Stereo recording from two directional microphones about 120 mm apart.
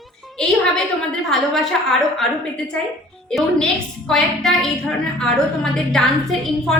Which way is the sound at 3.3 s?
5° left (ahead or behind).